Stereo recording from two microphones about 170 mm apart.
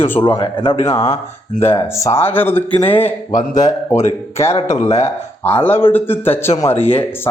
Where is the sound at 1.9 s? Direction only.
15° left (ahead or behind).